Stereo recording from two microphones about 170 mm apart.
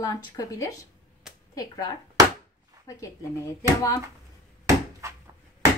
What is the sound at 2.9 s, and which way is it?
Speech, 20° left (ahead or behind).